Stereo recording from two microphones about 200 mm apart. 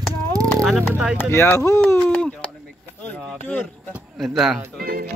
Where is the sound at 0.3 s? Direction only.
15° right (ahead or behind).